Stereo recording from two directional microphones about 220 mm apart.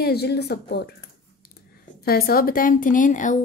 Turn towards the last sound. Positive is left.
turn(degrees=35)  # may be behind; listen again after turning